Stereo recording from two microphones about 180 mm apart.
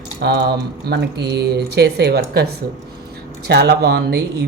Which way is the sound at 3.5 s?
65° right (ahead or behind).